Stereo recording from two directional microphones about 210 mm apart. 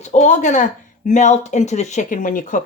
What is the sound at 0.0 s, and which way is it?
Speech, 35° left (ahead or behind).